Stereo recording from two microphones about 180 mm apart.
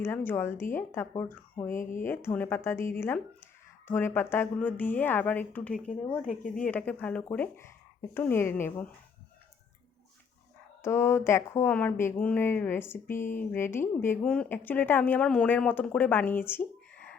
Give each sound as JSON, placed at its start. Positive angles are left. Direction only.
{"t": 0.0, "sound": "speech", "side_deg": 10}
{"t": 1.7, "sound": "speech", "side_deg": 45}
{"t": 2.0, "sound": "speech", "side_deg": 10}
{"t": 6.2, "sound": "speech", "side_deg": 45}
{"t": 6.6, "sound": "speech", "side_deg": 10}
{"t": 10.8, "sound": "speech", "side_deg": 15}